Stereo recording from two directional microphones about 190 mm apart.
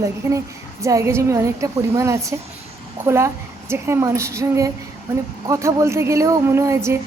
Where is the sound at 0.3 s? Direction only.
15° right (ahead or behind).